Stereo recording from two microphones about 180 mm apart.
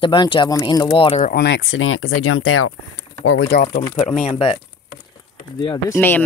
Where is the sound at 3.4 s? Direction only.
60° left (ahead or behind).